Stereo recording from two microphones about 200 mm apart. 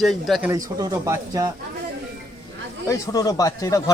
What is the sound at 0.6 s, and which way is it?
Speech, 20° right (ahead or behind).